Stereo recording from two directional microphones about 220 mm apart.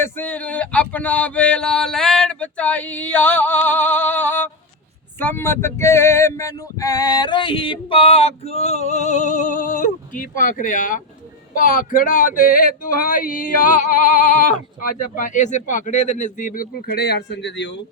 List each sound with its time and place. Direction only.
0.0 s a sound: 10° left (ahead or behind)
5.2 s male singing: 10° left (ahead or behind); by 11.0 s 35° left (ahead or behind)
11.5 s speech: 35° left (ahead or behind)
14.8 s speech: 35° left (ahead or behind); by 17.7 s 55° left (ahead or behind)